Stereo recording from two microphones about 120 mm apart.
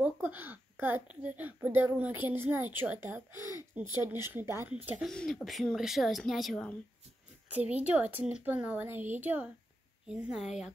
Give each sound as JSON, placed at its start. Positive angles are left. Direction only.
{"t": 0.0, "sound": "a woman's voice", "side_deg": -15}
{"t": 5.0, "sound": "speech", "side_deg": 5}
{"t": 7.4, "sound": "a woman's voice", "side_deg": -10}